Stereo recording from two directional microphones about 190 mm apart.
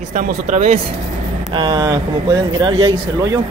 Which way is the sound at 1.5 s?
25° right (ahead or behind).